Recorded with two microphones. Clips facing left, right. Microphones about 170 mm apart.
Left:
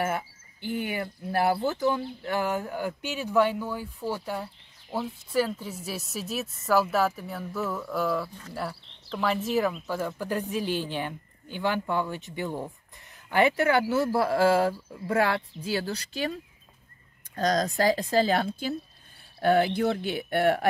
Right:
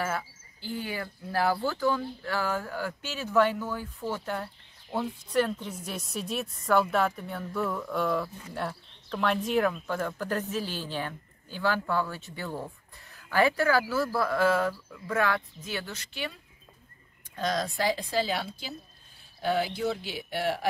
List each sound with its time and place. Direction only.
0.8 s speech: 20° left (ahead or behind); by 16.3 s 40° left (ahead or behind)
17.4 s speech: 45° left (ahead or behind)